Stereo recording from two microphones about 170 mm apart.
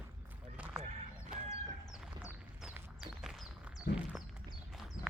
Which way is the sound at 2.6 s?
5° right (ahead or behind).